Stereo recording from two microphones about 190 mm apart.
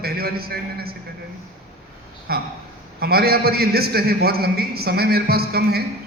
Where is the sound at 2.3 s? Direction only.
55° right (ahead or behind).